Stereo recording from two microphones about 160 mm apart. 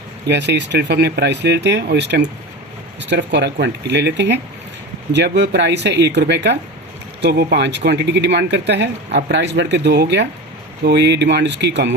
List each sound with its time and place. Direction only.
0.3 s speech: 90° right